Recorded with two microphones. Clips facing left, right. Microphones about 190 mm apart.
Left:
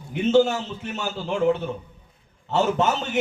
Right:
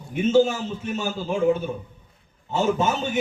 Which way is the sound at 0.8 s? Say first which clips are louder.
Right 2 dB; 70° left (ahead or behind).